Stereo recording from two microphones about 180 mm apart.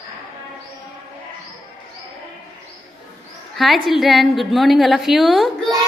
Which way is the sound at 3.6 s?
Centre (ahead or behind).